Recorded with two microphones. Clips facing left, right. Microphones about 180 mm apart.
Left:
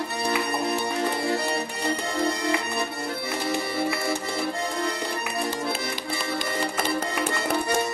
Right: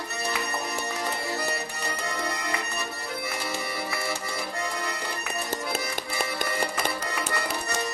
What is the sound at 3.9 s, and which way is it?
Accordion, 30° left (ahead or behind).